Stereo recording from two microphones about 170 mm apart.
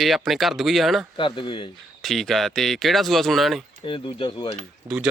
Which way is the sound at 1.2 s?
30° left (ahead or behind).